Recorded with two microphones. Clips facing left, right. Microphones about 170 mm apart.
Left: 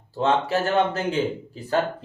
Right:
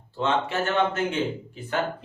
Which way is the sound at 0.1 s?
40° left (ahead or behind).